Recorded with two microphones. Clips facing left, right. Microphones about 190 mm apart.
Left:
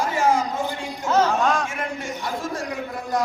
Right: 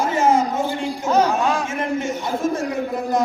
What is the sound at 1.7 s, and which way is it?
Speech, 25° right (ahead or behind).